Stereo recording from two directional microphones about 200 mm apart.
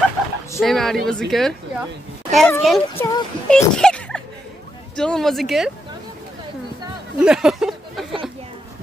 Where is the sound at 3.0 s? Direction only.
15° left (ahead or behind).